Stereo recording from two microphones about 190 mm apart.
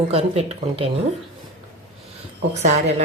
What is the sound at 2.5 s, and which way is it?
Speech, 35° right (ahead or behind).